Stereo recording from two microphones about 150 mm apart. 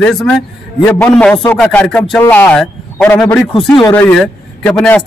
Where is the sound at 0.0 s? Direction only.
Centre (ahead or behind).